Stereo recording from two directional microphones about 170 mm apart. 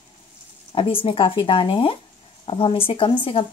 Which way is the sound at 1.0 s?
30° left (ahead or behind).